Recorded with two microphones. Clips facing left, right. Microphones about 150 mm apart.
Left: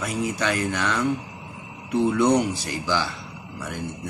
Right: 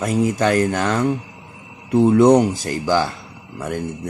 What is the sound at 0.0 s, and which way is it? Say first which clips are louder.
A man's voice: right 8 dB; 40° right (ahead or behind).